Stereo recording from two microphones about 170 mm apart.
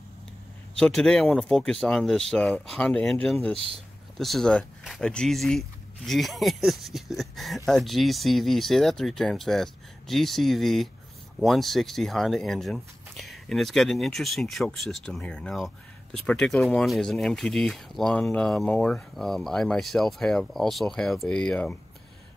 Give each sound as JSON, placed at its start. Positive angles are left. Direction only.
{"t": 0.7, "sound": "speech", "side_deg": 5}
{"t": 3.5, "sound": "speech", "side_deg": -35}
{"t": 4.2, "sound": "speech", "side_deg": 0}